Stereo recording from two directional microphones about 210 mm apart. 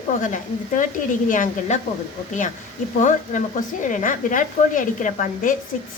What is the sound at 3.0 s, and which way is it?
Speech, 35° left (ahead or behind).